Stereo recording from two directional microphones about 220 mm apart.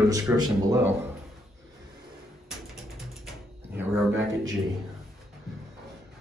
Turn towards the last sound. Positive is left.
turn(degrees=-10)  # may be behind; listen again after turning